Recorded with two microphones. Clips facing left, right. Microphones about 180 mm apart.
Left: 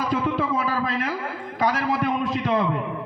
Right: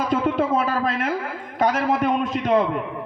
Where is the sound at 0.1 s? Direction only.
50° right (ahead or behind).